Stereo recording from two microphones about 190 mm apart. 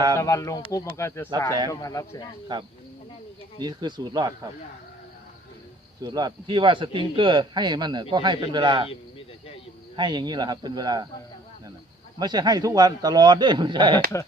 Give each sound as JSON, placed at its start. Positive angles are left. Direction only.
{"t": 0.2, "sound": "speech", "side_deg": 15}
{"t": 2.5, "sound": "a man's voice", "side_deg": -25}
{"t": 6.0, "sound": "a man's voice", "side_deg": -20}
{"t": 9.9, "sound": "a man's voice", "side_deg": -25}
{"t": 12.2, "sound": "a man's voice", "side_deg": -20}